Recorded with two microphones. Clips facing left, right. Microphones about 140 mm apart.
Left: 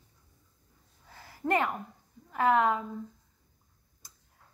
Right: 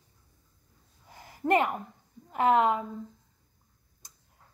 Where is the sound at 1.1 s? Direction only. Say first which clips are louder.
Right 4 dB; 20° right (ahead or behind).